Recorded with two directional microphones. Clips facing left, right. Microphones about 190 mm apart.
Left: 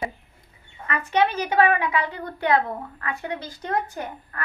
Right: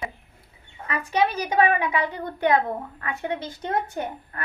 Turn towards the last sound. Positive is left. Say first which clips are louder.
# right 3 dB
turn(degrees=-25)  # may be behind; listen again after turning